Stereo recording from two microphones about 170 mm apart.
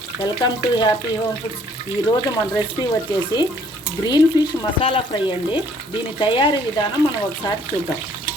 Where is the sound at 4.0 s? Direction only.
25° left (ahead or behind).